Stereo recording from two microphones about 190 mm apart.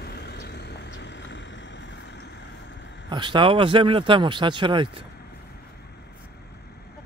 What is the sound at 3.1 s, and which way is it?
Speech, 25° right (ahead or behind).